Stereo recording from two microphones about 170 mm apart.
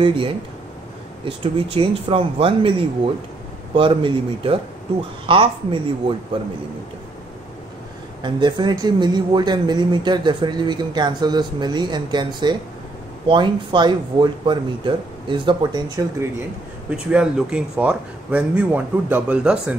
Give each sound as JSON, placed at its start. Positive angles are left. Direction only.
{"t": 0.0, "sound": "speech", "side_deg": -30}
{"t": 3.7, "sound": "speech", "side_deg": -30}
{"t": 8.2, "sound": "speech", "side_deg": -25}
{"t": 16.9, "sound": "a man's voice", "side_deg": -5}